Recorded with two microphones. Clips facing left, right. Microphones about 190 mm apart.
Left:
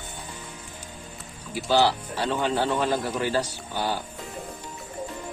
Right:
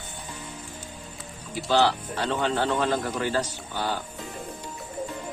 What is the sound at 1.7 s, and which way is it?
Speech, 10° left (ahead or behind).